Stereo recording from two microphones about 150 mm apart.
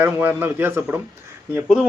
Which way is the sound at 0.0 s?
10° right (ahead or behind).